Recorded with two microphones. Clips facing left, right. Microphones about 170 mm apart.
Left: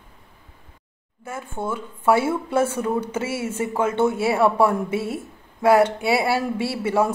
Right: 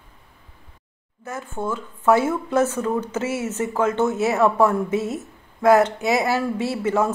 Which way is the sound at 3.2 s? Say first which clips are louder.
Right 2 dB; 30° left (ahead or behind).